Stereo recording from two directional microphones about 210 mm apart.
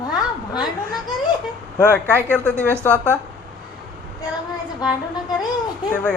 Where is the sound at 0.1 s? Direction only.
20° left (ahead or behind).